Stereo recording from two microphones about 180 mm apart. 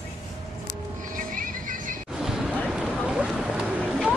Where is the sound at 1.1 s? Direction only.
50° right (ahead or behind).